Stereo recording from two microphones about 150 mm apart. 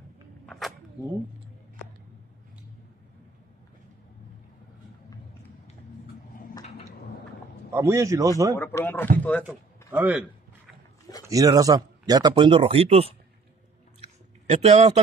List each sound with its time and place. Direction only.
0.5 s a sound: centre (ahead or behind)
7.7 s speech: 20° right (ahead or behind)
8.5 s speech: 15° left (ahead or behind)
9.8 s a man's voice: 10° right (ahead or behind)
11.2 s speech: 25° right (ahead or behind); by 13.1 s 40° right (ahead or behind)
14.0 s a sound: 45° right (ahead or behind)